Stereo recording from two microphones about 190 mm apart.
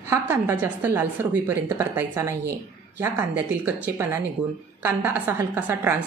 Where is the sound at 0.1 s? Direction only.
15° right (ahead or behind).